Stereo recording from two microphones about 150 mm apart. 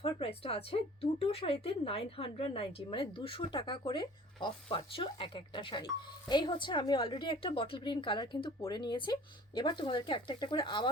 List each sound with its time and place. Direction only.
0.0 s a woman's voice: 40° left (ahead or behind)